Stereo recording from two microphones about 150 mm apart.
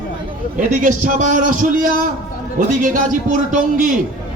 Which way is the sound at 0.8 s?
60° right (ahead or behind).